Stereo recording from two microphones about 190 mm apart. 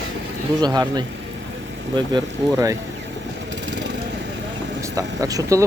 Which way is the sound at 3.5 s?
75° right (ahead or behind).